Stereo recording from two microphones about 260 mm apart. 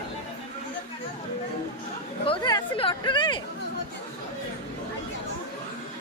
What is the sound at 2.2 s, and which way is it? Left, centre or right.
Chatter, centre.